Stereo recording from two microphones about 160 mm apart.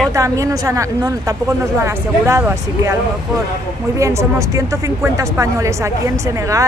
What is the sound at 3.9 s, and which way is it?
Speech, 20° right (ahead or behind).